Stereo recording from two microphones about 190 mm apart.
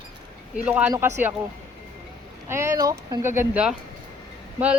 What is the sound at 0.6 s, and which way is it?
Speech, 5° right (ahead or behind).